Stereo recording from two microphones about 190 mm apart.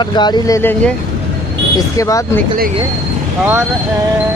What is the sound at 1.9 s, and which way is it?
Speech, 15° left (ahead or behind).